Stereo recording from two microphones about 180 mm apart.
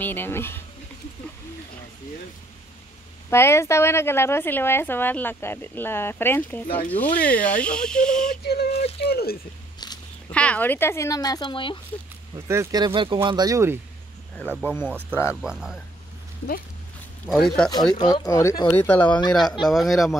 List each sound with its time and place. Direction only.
0.0 s a woman's voice: 10° left (ahead or behind)
3.3 s a woman's voice: 15° left (ahead or behind)
8.3 s a sound: 60° left (ahead or behind)
9.0 s speech: 60° left (ahead or behind)
10.3 s a woman's voice: 5° left (ahead or behind); by 11.8 s 25° left (ahead or behind)
12.4 s speech: 20° right (ahead or behind)
14.3 s a woman's voice: 5° left (ahead or behind)
15.4 s speech: 5° right (ahead or behind)
17.3 s speech: centre (ahead or behind)
17.9 s a woman's voice: 20° left (ahead or behind)
19.0 s speech: 25° left (ahead or behind)
19.6 s speech: centre (ahead or behind)